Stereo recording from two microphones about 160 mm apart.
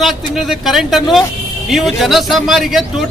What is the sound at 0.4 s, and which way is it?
A man's voice, centre (ahead or behind).